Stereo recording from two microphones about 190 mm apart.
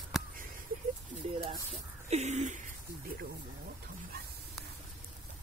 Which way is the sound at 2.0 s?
35° right (ahead or behind).